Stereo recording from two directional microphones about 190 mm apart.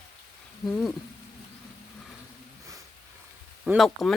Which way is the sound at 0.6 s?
Centre (ahead or behind).